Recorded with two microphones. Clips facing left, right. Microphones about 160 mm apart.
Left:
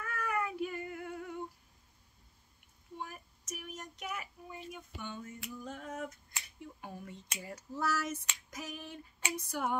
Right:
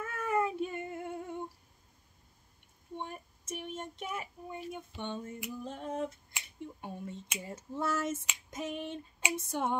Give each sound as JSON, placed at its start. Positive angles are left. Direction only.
{"t": 0.0, "sound": "cat", "side_deg": -25}
{"t": 3.0, "sound": "child singing", "side_deg": -25}
{"t": 4.6, "sound": "a sound", "side_deg": -25}
{"t": 5.5, "sound": "finger snapping", "side_deg": -30}
{"t": 7.3, "sound": "a sound", "side_deg": -25}
{"t": 9.3, "sound": "female singing", "side_deg": -25}